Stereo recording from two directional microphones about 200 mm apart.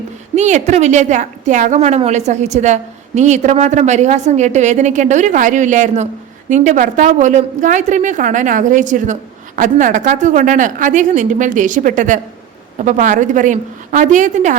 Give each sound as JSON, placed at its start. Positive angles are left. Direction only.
{"t": 0.3, "sound": "a woman's voice", "side_deg": -35}